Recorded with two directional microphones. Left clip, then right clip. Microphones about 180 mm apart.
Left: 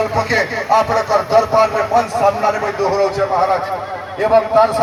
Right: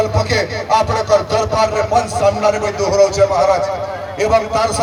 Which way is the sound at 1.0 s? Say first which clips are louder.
Left 1 dB; 15° left (ahead or behind).